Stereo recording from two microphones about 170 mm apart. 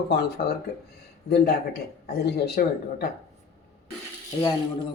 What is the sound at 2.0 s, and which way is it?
Speech, 70° left (ahead or behind).